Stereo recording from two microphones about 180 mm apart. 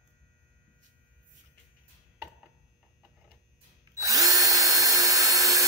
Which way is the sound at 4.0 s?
20° right (ahead or behind).